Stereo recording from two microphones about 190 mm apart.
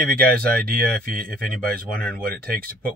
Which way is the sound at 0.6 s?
50° right (ahead or behind).